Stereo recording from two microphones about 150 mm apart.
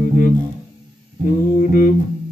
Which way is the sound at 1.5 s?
65° left (ahead or behind).